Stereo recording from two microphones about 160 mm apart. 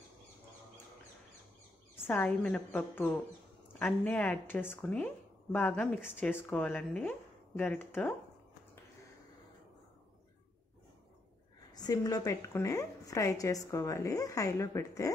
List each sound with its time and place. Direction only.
2.0 s a woman's voice: 10° left (ahead or behind)
11.7 s a woman's voice: 25° left (ahead or behind)